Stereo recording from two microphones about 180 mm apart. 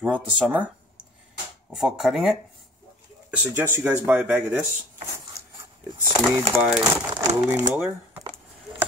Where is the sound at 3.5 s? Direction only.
10° right (ahead or behind).